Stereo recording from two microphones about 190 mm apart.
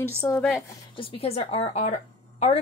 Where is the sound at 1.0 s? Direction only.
30° left (ahead or behind).